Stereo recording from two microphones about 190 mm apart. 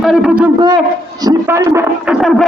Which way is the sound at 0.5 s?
20° right (ahead or behind).